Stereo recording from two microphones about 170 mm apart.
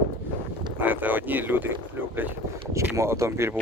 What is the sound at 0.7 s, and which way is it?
Speech, 10° right (ahead or behind).